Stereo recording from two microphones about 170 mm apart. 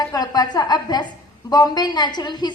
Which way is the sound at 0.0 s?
20° left (ahead or behind).